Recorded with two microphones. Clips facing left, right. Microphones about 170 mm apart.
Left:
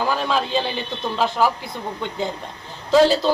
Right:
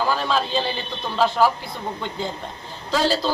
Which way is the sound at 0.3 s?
15° left (ahead or behind).